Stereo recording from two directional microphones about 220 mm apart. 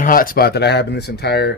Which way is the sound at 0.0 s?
40° left (ahead or behind).